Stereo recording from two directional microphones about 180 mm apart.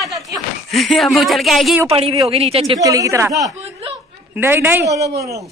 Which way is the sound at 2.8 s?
20° right (ahead or behind).